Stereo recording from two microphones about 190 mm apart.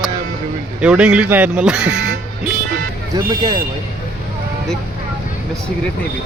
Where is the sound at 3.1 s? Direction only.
25° right (ahead or behind).